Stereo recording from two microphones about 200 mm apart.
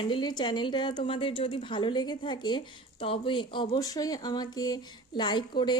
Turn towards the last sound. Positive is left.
turn(degrees=20)  # may be behind; listen again after turning